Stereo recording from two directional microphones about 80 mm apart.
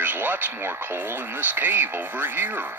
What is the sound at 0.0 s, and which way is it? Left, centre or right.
Speech, right.